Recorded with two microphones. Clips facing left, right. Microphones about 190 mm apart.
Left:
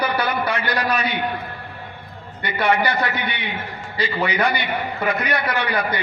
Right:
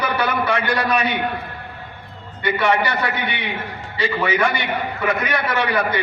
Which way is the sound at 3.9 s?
40° left (ahead or behind).